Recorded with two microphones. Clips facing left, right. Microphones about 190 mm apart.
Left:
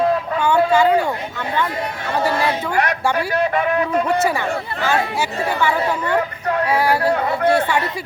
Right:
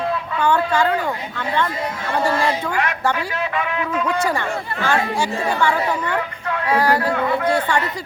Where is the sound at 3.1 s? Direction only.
45° left (ahead or behind).